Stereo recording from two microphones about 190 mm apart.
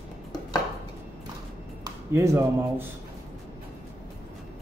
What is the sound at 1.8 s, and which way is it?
Speech, 15° right (ahead or behind).